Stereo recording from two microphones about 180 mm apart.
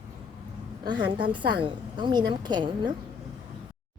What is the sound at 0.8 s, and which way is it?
A woman's voice, 25° right (ahead or behind).